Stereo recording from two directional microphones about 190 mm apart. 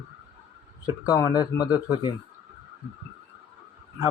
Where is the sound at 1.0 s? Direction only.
20° left (ahead or behind).